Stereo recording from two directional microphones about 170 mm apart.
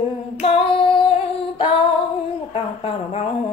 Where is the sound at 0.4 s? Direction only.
30° left (ahead or behind).